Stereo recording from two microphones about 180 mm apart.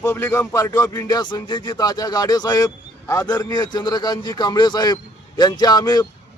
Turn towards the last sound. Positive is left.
turn(degrees=25)  # may be behind; listen again after turning